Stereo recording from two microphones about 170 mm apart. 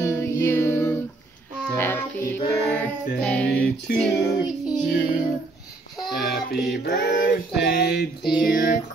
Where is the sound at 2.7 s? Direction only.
10° left (ahead or behind).